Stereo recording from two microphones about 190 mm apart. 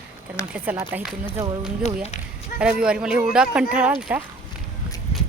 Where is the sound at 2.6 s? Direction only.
5° right (ahead or behind).